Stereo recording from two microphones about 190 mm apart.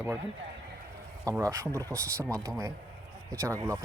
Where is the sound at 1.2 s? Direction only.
15° right (ahead or behind).